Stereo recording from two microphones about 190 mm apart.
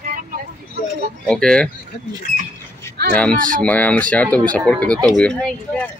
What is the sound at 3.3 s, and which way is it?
Speech, 45° right (ahead or behind).